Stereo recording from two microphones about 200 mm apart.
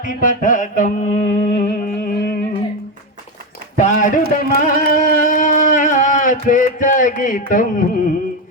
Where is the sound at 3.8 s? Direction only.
40° left (ahead or behind).